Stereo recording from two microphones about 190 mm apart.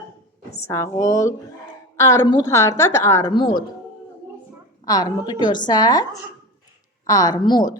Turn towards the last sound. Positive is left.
turn(degrees=20)  # may be behind; listen again after turning